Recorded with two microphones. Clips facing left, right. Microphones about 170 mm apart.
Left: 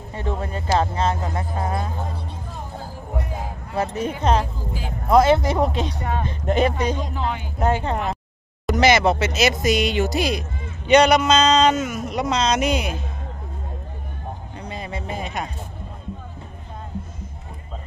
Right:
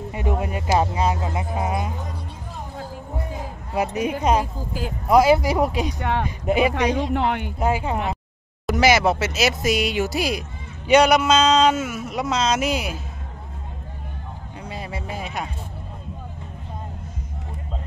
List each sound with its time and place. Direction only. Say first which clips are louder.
0.1 s speech: right 1 dB; 15° right (ahead or behind)
3.7 s speech: right 2 dB; 15° right (ahead or behind)
6.7 s speech: right 3 dB; 70° right (ahead or behind)
7.5 s speech: left 1 dB; 5° right (ahead or behind)
14.6 s music: even; 5° right (ahead or behind)